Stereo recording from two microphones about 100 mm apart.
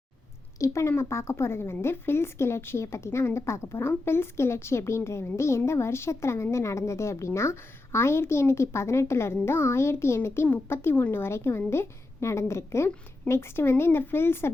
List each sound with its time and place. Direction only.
0.6 s a woman's voice: 30° left (ahead or behind)